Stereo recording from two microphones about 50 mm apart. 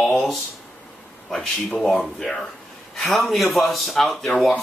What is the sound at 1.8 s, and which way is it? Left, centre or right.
Speech, centre.